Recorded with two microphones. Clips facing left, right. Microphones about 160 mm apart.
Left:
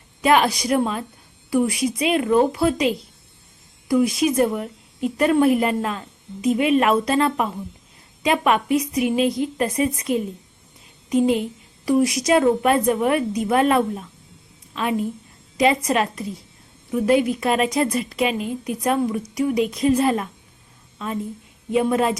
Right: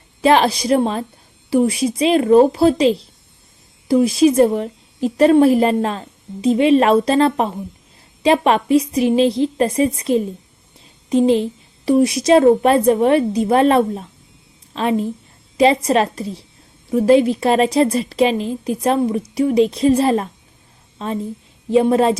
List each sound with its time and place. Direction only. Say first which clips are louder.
0.2 s a woman's voice: right 4 dB; 30° right (ahead or behind)